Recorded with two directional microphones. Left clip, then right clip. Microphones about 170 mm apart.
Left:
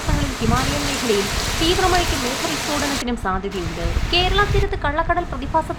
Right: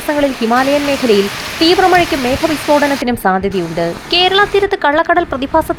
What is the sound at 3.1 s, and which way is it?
Speech, 35° right (ahead or behind).